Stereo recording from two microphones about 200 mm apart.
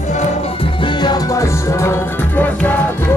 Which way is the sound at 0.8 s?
20° left (ahead or behind).